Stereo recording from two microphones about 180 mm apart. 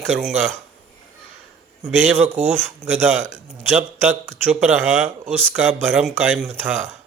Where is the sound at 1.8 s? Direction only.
10° right (ahead or behind).